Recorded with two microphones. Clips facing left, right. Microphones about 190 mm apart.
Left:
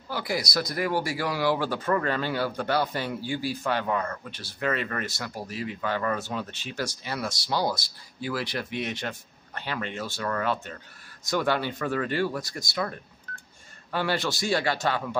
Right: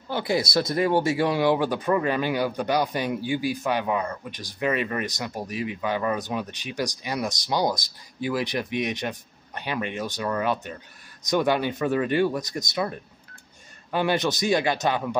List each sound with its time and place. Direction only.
0.1 s speech: 25° right (ahead or behind)